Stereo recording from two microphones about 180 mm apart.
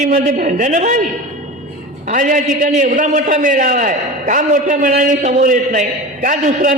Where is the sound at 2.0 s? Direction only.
45° right (ahead or behind).